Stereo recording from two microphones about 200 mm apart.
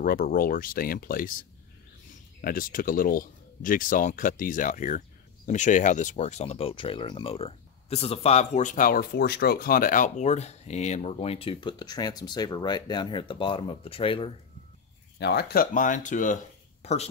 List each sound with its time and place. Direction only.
0.0 s speech: 45° left (ahead or behind); by 14.3 s 25° left (ahead or behind)
15.1 s speech: 55° left (ahead or behind); by 17.1 s 30° left (ahead or behind)